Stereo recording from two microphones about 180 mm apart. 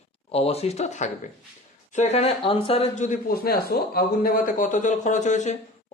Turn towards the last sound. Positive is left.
turn(degrees=40)  # may be behind; listen again after turning